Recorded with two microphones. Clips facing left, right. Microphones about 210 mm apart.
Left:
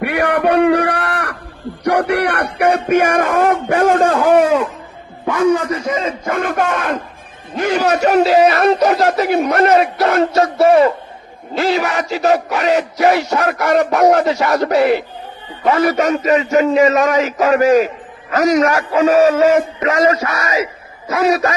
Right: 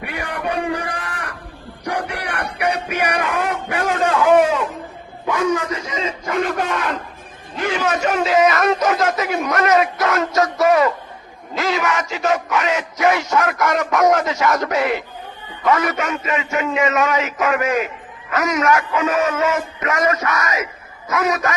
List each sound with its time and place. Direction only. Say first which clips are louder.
0.0 s a sound: left 11 dB; 70° left (ahead or behind)
1.8 s music: left 10 dB; 70° left (ahead or behind); by 4.2 s 50° left (ahead or behind)
5.2 s a man's voice: left 5 dB; 55° left (ahead or behind)
7.5 s a man's voice: left 5 dB; 40° left (ahead or behind)